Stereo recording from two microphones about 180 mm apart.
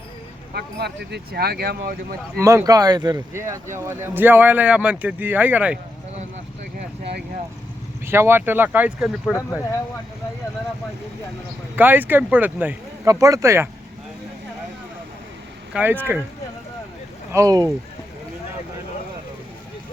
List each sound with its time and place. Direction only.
0.5 s speech: 65° right (ahead or behind)
2.4 s speech: 15° right (ahead or behind)
8.0 s speech: 15° right (ahead or behind)
11.8 s speech: 10° right (ahead or behind)
15.7 s speech: 10° right (ahead or behind)
17.3 s speech: 20° right (ahead or behind)